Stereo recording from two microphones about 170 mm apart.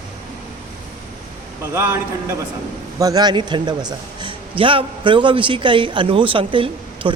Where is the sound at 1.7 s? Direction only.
15° right (ahead or behind).